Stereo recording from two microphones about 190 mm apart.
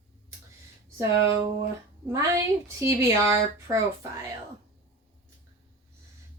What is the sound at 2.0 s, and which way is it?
A woman's voice, 15° right (ahead or behind).